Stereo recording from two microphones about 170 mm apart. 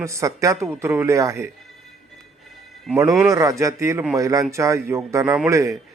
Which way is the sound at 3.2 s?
20° right (ahead or behind).